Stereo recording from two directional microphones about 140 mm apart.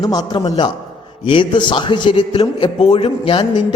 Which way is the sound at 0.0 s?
30° left (ahead or behind).